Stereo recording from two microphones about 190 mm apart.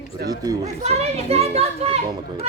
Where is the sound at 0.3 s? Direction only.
20° right (ahead or behind).